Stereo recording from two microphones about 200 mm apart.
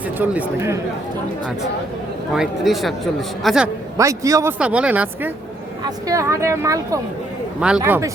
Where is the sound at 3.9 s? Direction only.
15° right (ahead or behind).